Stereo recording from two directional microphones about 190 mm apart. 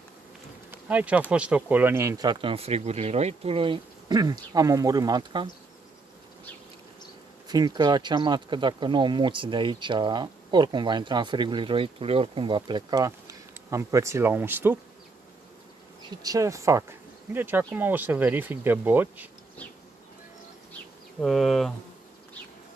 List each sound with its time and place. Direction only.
0.7 s bee: 10° right (ahead or behind)
1.3 s speech: 5° right (ahead or behind); by 5.5 s 20° right (ahead or behind)
7.4 s speech: 20° right (ahead or behind)
16.2 s speech: 20° right (ahead or behind)
21.2 s speech: centre (ahead or behind)